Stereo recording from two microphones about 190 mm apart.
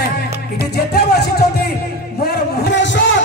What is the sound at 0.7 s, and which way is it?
Music, 55° left (ahead or behind).